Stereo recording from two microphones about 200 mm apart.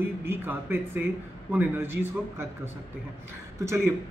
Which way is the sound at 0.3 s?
10° right (ahead or behind).